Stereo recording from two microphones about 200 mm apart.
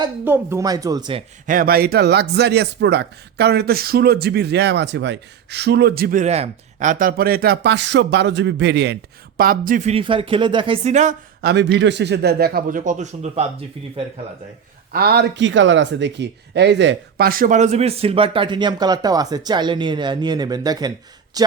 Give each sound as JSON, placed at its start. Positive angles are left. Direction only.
{"t": 0.0, "sound": "speech", "side_deg": -15}
{"t": 1.5, "sound": "speech", "side_deg": -45}
{"t": 9.4, "sound": "speech", "side_deg": -45}
{"t": 11.3, "sound": "a man's voice", "side_deg": -55}
{"t": 14.9, "sound": "speech", "side_deg": -50}